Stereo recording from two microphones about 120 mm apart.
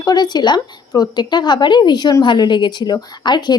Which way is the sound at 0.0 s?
35° left (ahead or behind).